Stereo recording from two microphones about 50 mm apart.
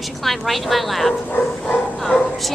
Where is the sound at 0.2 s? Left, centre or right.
Centre.